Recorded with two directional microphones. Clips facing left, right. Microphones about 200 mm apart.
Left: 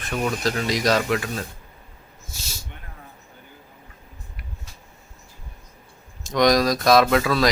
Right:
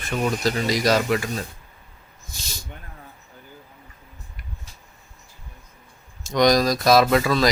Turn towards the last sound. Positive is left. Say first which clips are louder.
# even
turn(degrees=0)  # may be behind; listen again after turning